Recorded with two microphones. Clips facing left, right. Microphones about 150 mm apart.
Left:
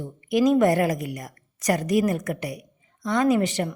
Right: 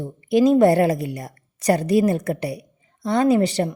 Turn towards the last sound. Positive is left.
turn(degrees=-35)  # may be behind; listen again after turning